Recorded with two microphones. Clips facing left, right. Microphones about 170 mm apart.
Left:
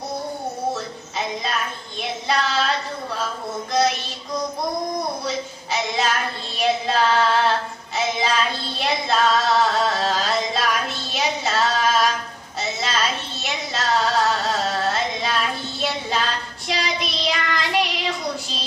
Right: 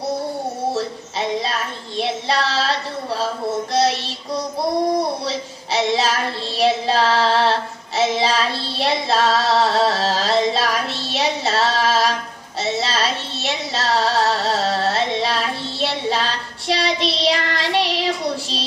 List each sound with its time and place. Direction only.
1.4 s speech: 35° right (ahead or behind)
3.7 s child singing: 30° right (ahead or behind)
5.2 s a sound: 30° right (ahead or behind)
6.6 s child singing: 30° right (ahead or behind)
8.0 s music: 35° right (ahead or behind)
12.6 s a sound: 30° right (ahead or behind)